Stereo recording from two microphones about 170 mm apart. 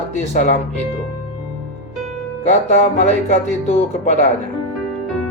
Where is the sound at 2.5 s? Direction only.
45° left (ahead or behind).